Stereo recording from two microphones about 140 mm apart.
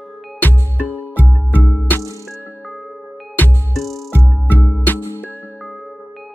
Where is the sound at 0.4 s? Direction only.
15° left (ahead or behind).